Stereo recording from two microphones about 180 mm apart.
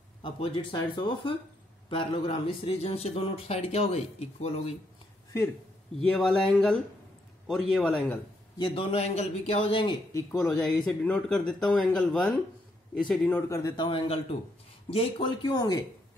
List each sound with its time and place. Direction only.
0.2 s speech: 30° left (ahead or behind)
5.9 s speech: 5° left (ahead or behind)
8.5 s speech: 30° left (ahead or behind)
10.4 s speech: 5° left (ahead or behind)
13.5 s speech: 15° left (ahead or behind)